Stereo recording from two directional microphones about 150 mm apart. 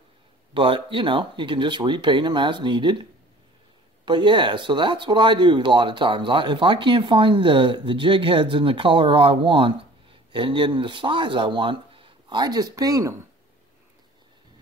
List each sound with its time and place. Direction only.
0.6 s speech: 35° right (ahead or behind)